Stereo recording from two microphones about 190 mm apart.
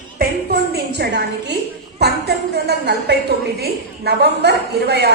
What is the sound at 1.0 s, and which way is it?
A woman's voice, 60° right (ahead or behind).